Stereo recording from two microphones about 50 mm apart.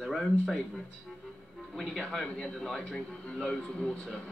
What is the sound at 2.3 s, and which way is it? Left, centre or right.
Speech, centre.